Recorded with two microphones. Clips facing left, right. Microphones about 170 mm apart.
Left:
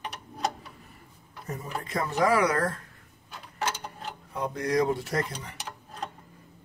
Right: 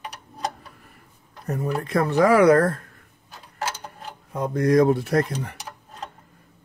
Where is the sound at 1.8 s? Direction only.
65° right (ahead or behind).